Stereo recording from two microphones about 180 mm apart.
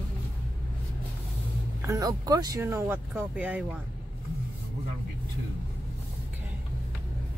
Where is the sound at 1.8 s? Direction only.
20° right (ahead or behind).